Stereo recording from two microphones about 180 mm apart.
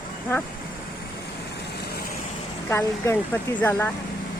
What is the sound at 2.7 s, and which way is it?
Speech, 15° left (ahead or behind).